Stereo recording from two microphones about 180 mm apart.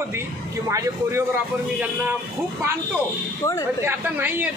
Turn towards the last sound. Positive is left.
turn(degrees=-10)  # may be behind; listen again after turning